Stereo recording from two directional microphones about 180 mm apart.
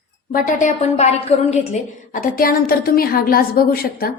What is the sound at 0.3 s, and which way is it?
A woman's voice, 45° left (ahead or behind).